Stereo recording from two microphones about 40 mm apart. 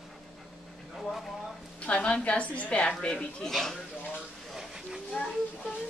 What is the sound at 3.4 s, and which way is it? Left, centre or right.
Speech, centre.